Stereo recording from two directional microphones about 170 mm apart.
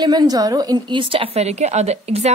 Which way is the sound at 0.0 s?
25° right (ahead or behind).